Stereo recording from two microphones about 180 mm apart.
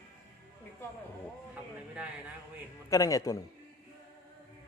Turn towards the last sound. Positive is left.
turn(degrees=20)  # may be behind; listen again after turning